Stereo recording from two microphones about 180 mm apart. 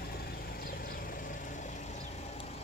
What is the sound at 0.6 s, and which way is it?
Vehicle, 55° left (ahead or behind).